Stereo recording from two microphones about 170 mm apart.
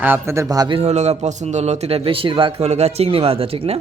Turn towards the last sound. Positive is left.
turn(degrees=-35)  # may be behind; listen again after turning